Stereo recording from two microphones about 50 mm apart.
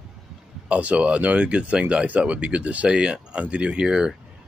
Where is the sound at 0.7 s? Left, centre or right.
Right.